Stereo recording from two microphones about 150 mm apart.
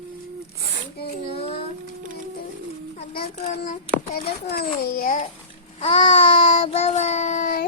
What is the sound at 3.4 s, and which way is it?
Speech, 55° left (ahead or behind).